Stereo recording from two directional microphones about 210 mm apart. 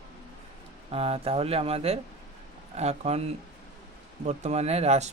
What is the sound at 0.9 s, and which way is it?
Speech, 30° right (ahead or behind).